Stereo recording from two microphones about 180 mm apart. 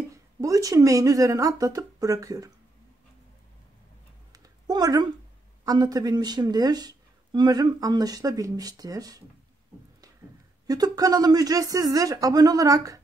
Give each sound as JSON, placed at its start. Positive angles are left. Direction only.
{"t": 0.1, "sound": "speech", "side_deg": -20}
{"t": 4.3, "sound": "typing", "side_deg": -20}
{"t": 5.7, "sound": "speech", "side_deg": -20}
{"t": 10.7, "sound": "speech", "side_deg": -20}